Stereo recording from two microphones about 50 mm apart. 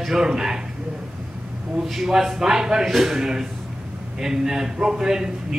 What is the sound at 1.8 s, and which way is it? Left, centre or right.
A man's voice, centre.